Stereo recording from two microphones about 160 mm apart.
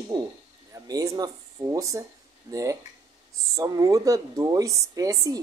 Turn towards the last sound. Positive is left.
turn(degrees=-20)  # may be behind; listen again after turning